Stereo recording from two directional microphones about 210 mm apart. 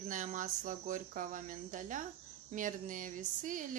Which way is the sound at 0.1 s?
40° right (ahead or behind).